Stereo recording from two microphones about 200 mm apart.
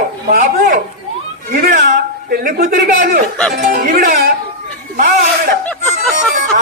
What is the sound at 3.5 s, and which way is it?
Music, 45° right (ahead or behind).